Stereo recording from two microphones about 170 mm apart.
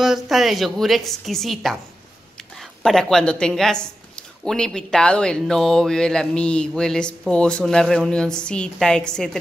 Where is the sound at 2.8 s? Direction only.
5° left (ahead or behind).